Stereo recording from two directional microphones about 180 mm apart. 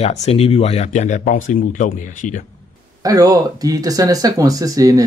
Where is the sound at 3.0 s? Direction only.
20° right (ahead or behind).